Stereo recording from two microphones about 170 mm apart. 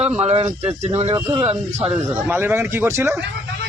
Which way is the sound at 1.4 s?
40° right (ahead or behind).